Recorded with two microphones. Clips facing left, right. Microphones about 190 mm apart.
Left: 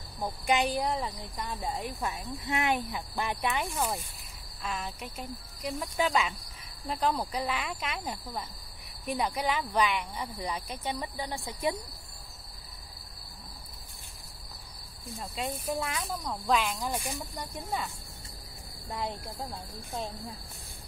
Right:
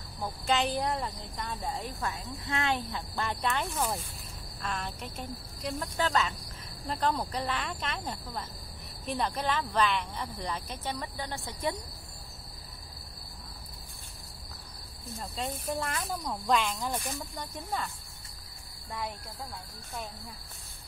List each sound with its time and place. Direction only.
0.2 s speech: 15° left (ahead or behind)
3.7 s cricket: centre (ahead or behind)
4.6 s speech: 5° left (ahead or behind)
15.0 s speech: 15° left (ahead or behind)
15.4 s cricket: 5° left (ahead or behind)
17.2 s speech: 10° left (ahead or behind)
18.9 s speech: 25° left (ahead or behind)